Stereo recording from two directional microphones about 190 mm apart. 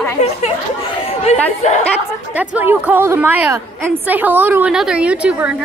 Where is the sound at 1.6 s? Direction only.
40° left (ahead or behind).